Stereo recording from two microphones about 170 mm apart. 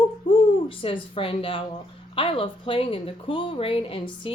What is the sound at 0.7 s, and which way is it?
Speech, 30° left (ahead or behind).